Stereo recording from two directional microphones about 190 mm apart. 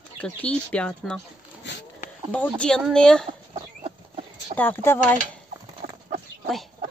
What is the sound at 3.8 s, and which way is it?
Horse, 30° right (ahead or behind).